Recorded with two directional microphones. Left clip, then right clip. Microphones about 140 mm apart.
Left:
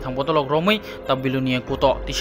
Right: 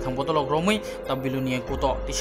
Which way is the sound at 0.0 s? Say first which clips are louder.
Left 3 dB; 30° left (ahead or behind).